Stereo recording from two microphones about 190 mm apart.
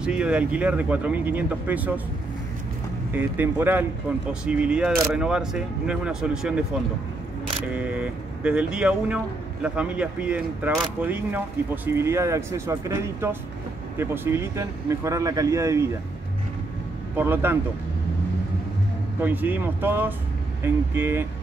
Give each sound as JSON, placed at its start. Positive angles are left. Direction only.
{"t": 0.0, "sound": "speech", "side_deg": -5}
{"t": 3.1, "sound": "speech", "side_deg": -10}
{"t": 7.6, "sound": "speech", "side_deg": -5}
{"t": 17.1, "sound": "speech", "side_deg": -10}
{"t": 19.2, "sound": "speech", "side_deg": -10}